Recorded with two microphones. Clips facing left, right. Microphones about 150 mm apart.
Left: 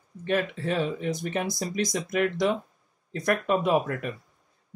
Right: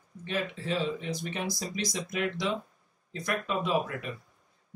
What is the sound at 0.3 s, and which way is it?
Speech, 55° left (ahead or behind).